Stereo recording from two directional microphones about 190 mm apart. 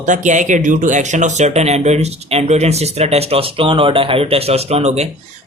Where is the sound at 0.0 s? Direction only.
40° right (ahead or behind).